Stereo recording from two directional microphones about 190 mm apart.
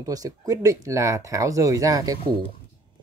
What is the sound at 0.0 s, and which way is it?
Speech, 20° right (ahead or behind).